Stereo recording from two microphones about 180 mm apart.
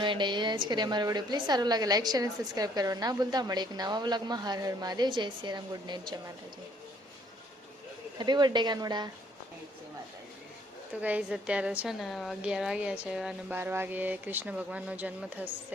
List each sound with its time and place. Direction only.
0.0 s a woman's voice: 25° right (ahead or behind)
8.2 s a woman's voice: 25° right (ahead or behind)
10.9 s a woman's voice: 10° right (ahead or behind)